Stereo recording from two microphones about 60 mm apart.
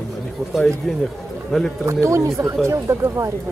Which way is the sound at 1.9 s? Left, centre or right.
Right.